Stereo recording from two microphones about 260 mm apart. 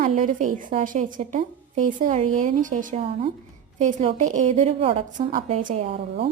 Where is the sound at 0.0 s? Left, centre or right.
Right.